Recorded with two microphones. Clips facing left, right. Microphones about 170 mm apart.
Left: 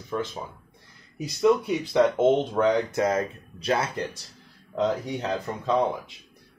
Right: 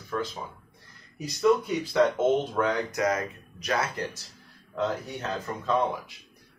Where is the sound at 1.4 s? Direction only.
20° left (ahead or behind).